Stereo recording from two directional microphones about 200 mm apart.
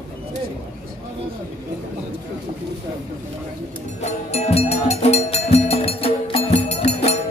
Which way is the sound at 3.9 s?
35° left (ahead or behind).